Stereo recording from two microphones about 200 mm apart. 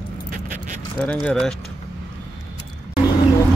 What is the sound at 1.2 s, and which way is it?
Speech, 5° left (ahead or behind).